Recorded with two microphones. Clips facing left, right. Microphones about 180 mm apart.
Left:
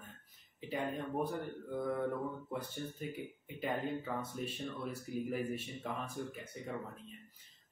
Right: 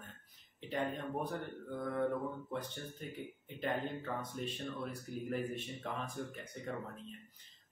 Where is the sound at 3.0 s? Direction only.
5° left (ahead or behind).